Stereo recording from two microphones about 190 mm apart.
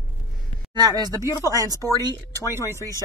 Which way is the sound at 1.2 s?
20° left (ahead or behind).